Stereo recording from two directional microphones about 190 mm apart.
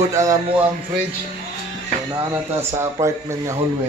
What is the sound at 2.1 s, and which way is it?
Speech, 15° right (ahead or behind).